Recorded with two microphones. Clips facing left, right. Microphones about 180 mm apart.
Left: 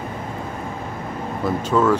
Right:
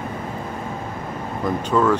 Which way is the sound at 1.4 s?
5° left (ahead or behind).